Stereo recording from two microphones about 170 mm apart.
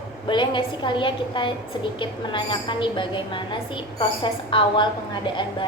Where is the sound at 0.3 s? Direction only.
30° left (ahead or behind).